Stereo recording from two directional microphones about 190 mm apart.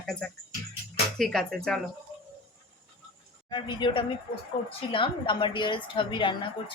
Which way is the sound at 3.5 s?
25° left (ahead or behind).